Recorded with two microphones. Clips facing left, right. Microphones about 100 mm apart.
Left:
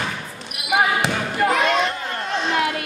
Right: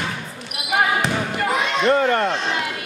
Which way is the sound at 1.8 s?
70° right (ahead or behind).